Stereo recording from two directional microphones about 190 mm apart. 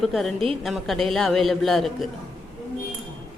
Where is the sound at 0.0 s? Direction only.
Centre (ahead or behind).